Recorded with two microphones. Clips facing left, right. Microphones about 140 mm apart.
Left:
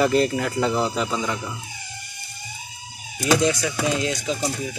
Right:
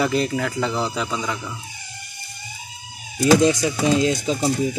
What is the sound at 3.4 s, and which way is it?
Speech, 25° right (ahead or behind).